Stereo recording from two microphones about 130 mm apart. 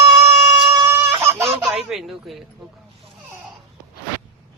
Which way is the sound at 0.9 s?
20° right (ahead or behind).